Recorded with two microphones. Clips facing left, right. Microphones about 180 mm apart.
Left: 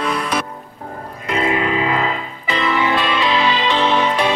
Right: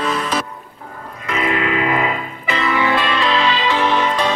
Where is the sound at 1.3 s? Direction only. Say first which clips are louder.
Left 1 dB; 30° left (ahead or behind).